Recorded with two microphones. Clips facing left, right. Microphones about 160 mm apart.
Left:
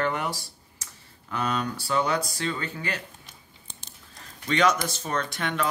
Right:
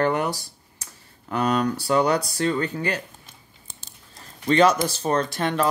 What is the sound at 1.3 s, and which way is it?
Speech, 40° right (ahead or behind).